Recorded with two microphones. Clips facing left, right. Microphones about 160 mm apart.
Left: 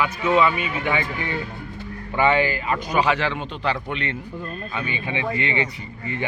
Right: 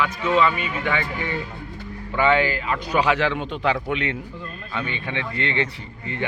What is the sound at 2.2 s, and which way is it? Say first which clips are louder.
A man's voice: even; 5° left (ahead or behind).